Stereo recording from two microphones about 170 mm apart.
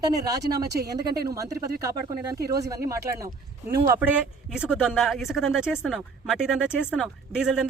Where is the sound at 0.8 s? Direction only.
65° right (ahead or behind).